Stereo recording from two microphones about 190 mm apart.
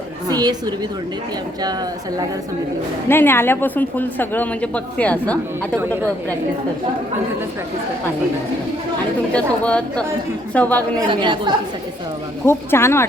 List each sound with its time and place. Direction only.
0.3 s a woman's voice: 20° right (ahead or behind)
3.1 s speech: 10° left (ahead or behind)
9.3 s speech: 5° left (ahead or behind)
11.1 s a woman's voice: 25° right (ahead or behind)
12.5 s speech: 15° left (ahead or behind)